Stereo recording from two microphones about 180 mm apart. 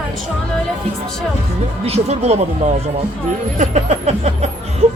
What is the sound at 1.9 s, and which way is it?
Speech, 35° right (ahead or behind).